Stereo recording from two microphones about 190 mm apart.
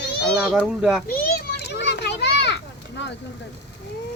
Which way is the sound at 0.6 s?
5° right (ahead or behind).